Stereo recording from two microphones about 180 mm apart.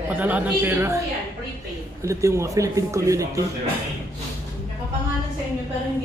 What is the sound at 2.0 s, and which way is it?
Speech, 15° right (ahead or behind).